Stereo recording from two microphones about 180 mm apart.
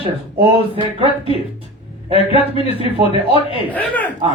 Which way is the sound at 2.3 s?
30° left (ahead or behind).